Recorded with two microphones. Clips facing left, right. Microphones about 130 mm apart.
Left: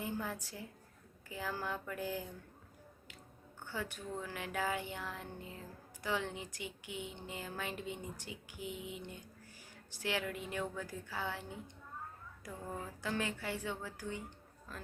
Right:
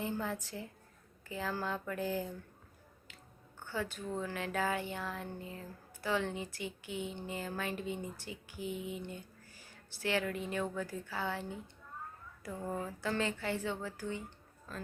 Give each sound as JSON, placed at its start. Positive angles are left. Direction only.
{"t": 0.0, "sound": "a woman's voice", "side_deg": 10}
{"t": 3.7, "sound": "speech", "side_deg": 15}
{"t": 12.5, "sound": "speech", "side_deg": -15}
{"t": 13.0, "sound": "speech", "side_deg": 15}